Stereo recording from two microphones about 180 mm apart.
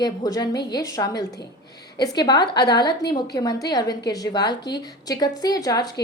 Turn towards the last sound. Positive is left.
turn(degrees=20)  # may be behind; listen again after turning